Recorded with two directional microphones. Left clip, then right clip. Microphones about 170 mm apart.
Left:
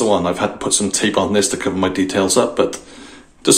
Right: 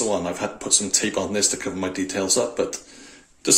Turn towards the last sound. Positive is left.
turn(degrees=-15)  # may be behind; listen again after turning